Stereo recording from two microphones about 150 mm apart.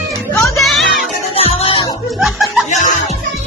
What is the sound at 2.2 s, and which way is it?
Chuckle, centre (ahead or behind).